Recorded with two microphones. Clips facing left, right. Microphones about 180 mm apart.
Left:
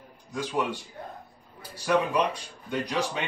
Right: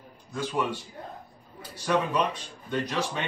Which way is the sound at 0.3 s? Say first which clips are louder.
Even; 15° left (ahead or behind).